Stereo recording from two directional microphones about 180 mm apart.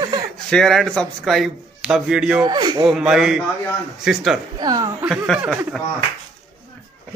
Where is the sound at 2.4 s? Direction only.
25° right (ahead or behind).